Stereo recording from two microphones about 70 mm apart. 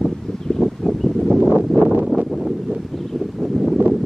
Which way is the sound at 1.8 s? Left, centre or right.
Right.